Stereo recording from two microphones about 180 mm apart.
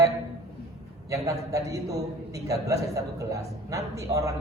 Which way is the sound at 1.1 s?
20° right (ahead or behind).